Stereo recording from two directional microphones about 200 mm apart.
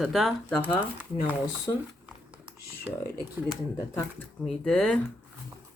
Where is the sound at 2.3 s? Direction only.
5° right (ahead or behind).